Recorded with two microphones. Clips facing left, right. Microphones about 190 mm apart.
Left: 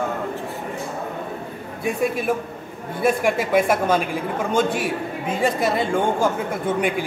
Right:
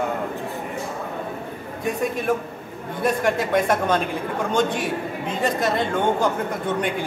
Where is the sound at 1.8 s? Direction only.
10° left (ahead or behind).